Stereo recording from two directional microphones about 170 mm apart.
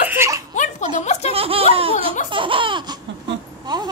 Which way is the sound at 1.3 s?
35° right (ahead or behind).